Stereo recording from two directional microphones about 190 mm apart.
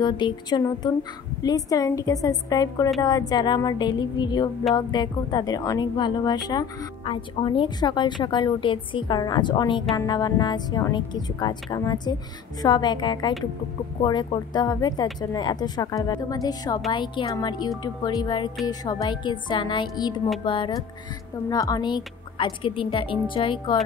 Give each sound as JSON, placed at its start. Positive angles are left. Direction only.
{"t": 0.0, "sound": "a woman's voice", "side_deg": 25}